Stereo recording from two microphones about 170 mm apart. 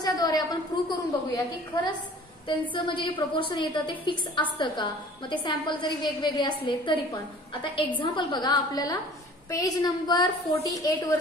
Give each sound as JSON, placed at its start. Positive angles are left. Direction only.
{"t": 0.0, "sound": "a woman's voice", "side_deg": 25}
{"t": 2.7, "sound": "a woman's voice", "side_deg": 30}